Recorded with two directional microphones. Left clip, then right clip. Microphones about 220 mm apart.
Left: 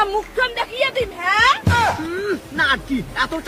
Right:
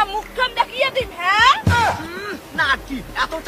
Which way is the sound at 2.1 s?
25° right (ahead or behind).